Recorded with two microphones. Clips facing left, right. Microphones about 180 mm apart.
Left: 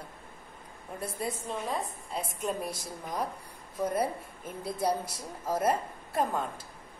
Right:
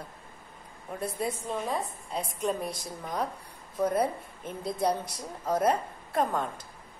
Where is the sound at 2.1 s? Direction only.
5° left (ahead or behind).